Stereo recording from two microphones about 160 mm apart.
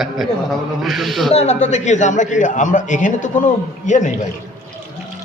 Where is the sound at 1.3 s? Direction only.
40° left (ahead or behind).